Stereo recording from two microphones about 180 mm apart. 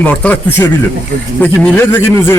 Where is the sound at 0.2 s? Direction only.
10° left (ahead or behind).